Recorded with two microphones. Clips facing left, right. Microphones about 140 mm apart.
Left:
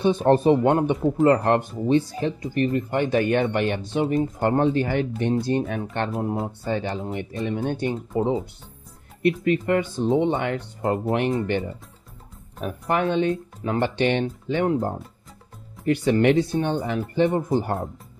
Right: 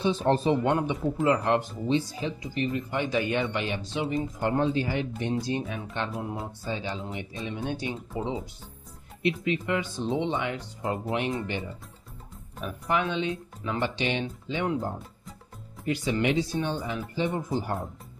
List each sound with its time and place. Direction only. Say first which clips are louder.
0.0 s speech: left 6 dB; 55° left (ahead or behind)
6.4 s speech: left 7 dB; 60° left (ahead or behind)
15.8 s speech: left 7 dB; 60° left (ahead or behind)